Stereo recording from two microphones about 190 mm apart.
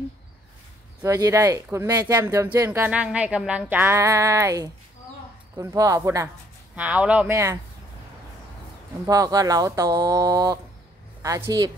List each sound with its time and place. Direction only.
1.0 s speech: 15° right (ahead or behind)
9.0 s speech: 20° right (ahead or behind)